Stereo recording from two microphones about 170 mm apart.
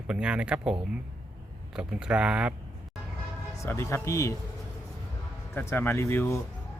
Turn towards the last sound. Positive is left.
turn(degrees=15)  # may be behind; listen again after turning